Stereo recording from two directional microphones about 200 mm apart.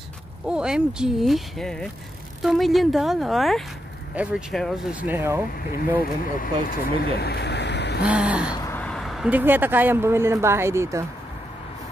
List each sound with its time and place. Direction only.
0.5 s speech: 5° right (ahead or behind)
5.9 s speech: 45° left (ahead or behind)
7.2 s a sound: 55° left (ahead or behind)
8.0 s speech: 5° right (ahead or behind)
8.5 s speech: 10° left (ahead or behind); by 11.1 s 15° right (ahead or behind)